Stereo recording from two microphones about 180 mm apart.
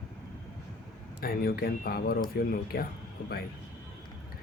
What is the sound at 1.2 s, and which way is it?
Speech, 55° left (ahead or behind).